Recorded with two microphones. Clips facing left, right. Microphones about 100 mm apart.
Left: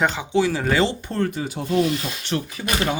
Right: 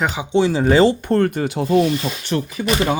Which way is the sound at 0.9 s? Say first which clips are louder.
Right 8 dB; 55° right (ahead or behind).